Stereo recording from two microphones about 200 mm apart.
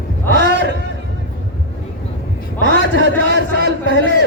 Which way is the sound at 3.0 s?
55° right (ahead or behind).